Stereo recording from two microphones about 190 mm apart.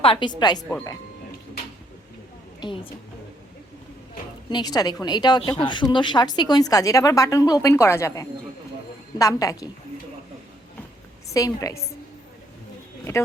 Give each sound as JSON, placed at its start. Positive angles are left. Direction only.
{"t": 0.0, "sound": "a woman's voice", "side_deg": 25}
{"t": 4.4, "sound": "a woman's voice", "side_deg": 20}
{"t": 11.3, "sound": "a woman's voice", "side_deg": 20}
{"t": 13.1, "sound": "a woman's voice", "side_deg": 15}